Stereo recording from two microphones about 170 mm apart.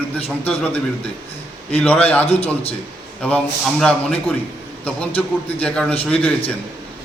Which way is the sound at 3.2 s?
5° left (ahead or behind).